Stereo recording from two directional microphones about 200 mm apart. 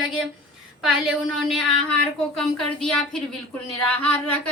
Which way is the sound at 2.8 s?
Centre (ahead or behind).